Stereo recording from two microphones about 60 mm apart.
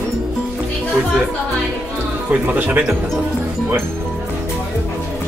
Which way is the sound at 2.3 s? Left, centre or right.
Right.